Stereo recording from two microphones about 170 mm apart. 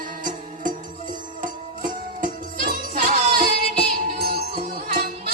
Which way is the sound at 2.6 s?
60° right (ahead or behind).